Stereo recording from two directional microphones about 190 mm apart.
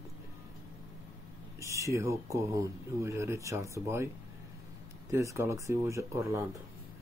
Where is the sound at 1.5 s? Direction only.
15° right (ahead or behind).